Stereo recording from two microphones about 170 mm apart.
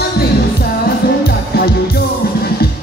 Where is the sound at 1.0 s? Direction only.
65° left (ahead or behind).